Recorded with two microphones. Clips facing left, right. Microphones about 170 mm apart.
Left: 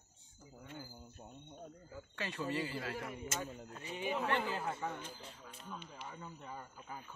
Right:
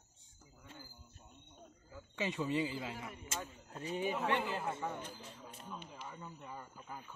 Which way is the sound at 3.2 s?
35° right (ahead or behind).